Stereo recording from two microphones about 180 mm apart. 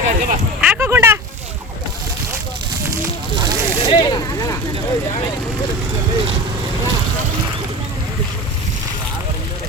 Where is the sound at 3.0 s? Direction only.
20° right (ahead or behind).